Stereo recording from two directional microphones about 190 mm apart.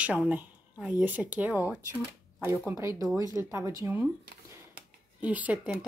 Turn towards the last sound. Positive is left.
turn(degrees=-5)  # may be behind; listen again after turning